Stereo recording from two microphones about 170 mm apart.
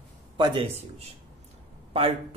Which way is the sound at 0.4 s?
30° right (ahead or behind).